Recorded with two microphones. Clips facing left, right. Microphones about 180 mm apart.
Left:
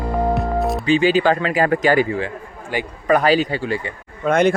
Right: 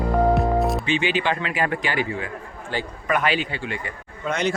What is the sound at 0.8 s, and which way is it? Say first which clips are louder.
Speech: left 7 dB; 40° left (ahead or behind).